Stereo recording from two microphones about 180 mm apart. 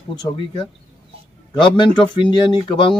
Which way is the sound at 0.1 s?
20° left (ahead or behind).